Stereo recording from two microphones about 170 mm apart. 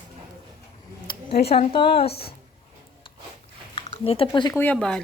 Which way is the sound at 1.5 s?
35° left (ahead or behind).